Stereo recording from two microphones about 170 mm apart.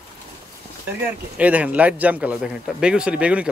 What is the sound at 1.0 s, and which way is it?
Speech, 10° right (ahead or behind).